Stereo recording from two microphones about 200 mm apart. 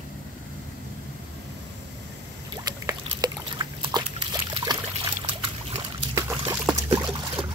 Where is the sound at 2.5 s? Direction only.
20° right (ahead or behind).